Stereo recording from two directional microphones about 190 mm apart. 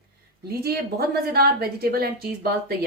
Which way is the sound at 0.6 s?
55° right (ahead or behind).